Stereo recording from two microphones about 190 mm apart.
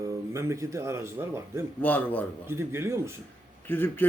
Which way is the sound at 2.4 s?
15° right (ahead or behind).